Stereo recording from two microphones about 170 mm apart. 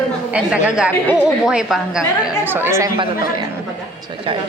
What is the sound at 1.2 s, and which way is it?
A woman's voice, 5° right (ahead or behind).